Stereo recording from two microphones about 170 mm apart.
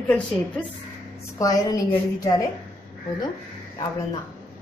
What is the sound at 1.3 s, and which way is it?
Speech, 20° left (ahead or behind).